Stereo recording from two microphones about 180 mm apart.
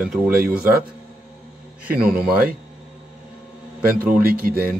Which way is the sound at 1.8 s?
55° right (ahead or behind).